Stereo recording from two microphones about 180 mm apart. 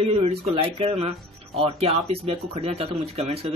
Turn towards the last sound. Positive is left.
turn(degrees=-35)  # may be behind; listen again after turning